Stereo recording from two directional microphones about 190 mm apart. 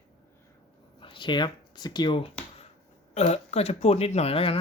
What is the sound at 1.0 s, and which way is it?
Speech, 25° left (ahead or behind).